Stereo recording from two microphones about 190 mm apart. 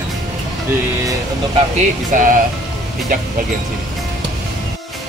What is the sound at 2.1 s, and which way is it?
Speech, 45° right (ahead or behind).